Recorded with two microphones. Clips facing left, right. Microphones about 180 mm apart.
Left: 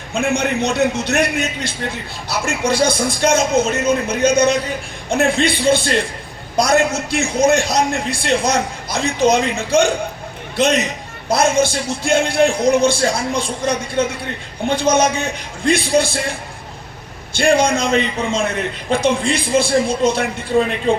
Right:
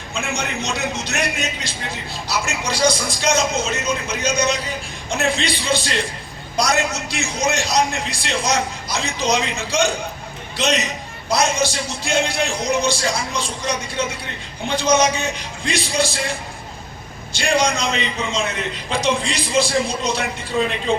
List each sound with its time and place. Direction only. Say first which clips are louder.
0.1 s a man's voice: left 8 dB; 55° left (ahead or behind)
17.3 s a man's voice: left 5 dB; 55° left (ahead or behind)